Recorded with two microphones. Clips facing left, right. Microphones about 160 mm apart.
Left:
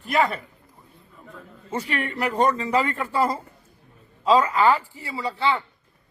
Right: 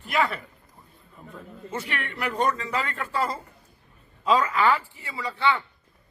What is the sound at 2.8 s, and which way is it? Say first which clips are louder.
Speech: left 5 dB; 15° left (ahead or behind).